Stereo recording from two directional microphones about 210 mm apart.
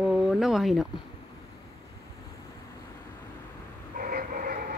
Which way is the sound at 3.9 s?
40° right (ahead or behind).